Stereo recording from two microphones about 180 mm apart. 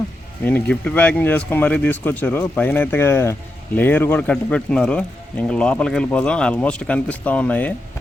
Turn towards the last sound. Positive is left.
turn(degrees=10)  # may be behind; listen again after turning